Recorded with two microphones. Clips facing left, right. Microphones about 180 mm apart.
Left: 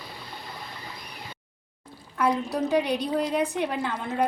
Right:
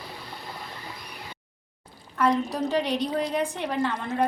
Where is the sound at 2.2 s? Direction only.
10° left (ahead or behind).